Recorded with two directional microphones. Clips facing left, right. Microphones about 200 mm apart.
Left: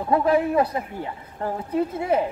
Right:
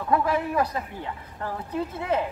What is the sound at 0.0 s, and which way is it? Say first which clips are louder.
Speech: left 4 dB; 25° left (ahead or behind).